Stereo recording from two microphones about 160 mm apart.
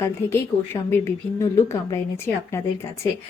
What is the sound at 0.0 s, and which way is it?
Speech, 15° left (ahead or behind).